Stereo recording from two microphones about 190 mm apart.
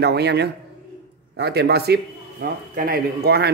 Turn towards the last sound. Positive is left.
turn(degrees=-55)  # may be behind; listen again after turning